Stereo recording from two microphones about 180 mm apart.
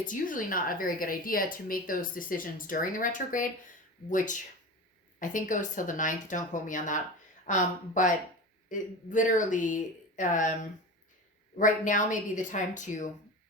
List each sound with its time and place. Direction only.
0.0 s a woman's voice: 45° left (ahead or behind)